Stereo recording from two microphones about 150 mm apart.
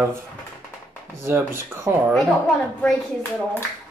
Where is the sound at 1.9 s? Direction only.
15° right (ahead or behind).